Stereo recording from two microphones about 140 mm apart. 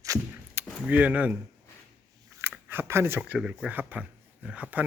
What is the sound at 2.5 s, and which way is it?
Speech, 15° right (ahead or behind).